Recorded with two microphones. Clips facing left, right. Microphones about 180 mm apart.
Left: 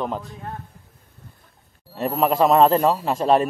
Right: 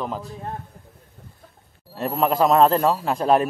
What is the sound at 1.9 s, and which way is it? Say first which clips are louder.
A man's voice: left 1 dB; centre (ahead or behind).